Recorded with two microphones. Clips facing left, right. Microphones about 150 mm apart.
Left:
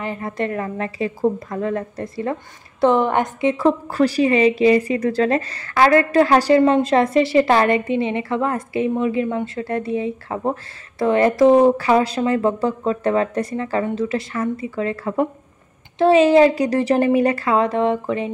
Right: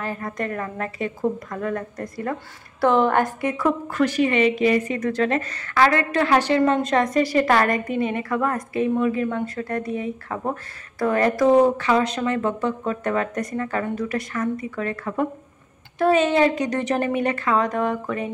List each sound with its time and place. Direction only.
0.0 s a woman's voice: 20° left (ahead or behind)